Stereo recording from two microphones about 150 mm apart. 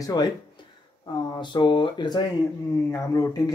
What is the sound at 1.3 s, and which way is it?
Speech, 30° left (ahead or behind).